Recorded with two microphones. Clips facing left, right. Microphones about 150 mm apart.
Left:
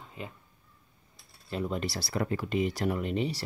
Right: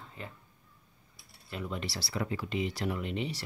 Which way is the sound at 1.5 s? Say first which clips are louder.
Left 5 dB; 40° left (ahead or behind).